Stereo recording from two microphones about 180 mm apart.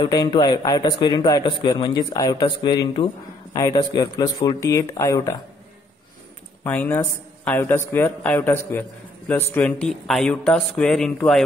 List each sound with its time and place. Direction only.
0.0 s a man's voice: 25° left (ahead or behind)
6.6 s speech: 10° left (ahead or behind)